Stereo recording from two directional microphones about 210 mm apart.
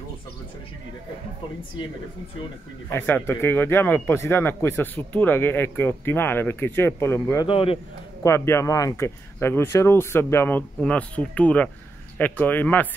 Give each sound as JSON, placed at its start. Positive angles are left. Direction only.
{"t": 2.9, "sound": "speech", "side_deg": 10}
{"t": 7.4, "sound": "a man's voice", "side_deg": 25}
{"t": 8.2, "sound": "speech", "side_deg": 15}